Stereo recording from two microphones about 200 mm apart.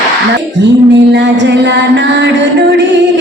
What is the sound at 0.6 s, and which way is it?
Music, 60° right (ahead or behind).